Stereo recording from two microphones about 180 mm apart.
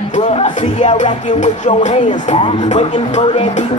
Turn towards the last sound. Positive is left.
turn(degrees=40)  # may be behind; listen again after turning